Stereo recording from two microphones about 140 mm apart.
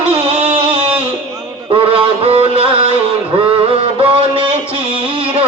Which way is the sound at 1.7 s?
40° right (ahead or behind).